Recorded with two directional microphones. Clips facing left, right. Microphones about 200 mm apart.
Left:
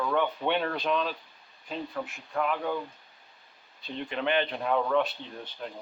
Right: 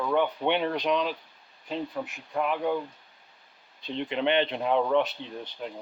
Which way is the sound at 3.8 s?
25° right (ahead or behind).